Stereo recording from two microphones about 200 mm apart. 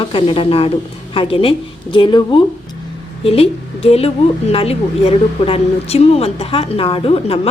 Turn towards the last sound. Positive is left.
turn(degrees=30)  # may be behind; listen again after turning